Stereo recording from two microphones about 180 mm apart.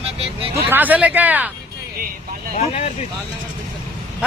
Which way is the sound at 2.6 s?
35° left (ahead or behind).